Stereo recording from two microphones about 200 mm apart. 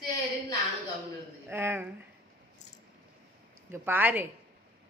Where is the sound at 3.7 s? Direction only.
10° right (ahead or behind).